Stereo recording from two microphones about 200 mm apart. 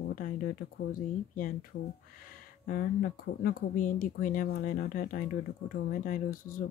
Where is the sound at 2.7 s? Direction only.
45° left (ahead or behind).